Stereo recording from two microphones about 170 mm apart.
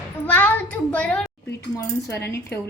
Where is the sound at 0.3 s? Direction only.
10° left (ahead or behind).